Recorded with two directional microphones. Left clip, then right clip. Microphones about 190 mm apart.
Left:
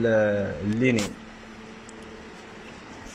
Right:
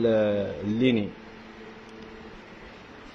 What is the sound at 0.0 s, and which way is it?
Speech, 10° right (ahead or behind).